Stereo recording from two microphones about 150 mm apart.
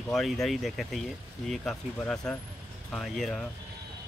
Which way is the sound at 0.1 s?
Centre (ahead or behind).